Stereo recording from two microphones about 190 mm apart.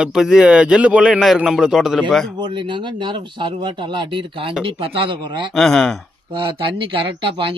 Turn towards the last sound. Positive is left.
turn(degrees=-25)  # may be behind; listen again after turning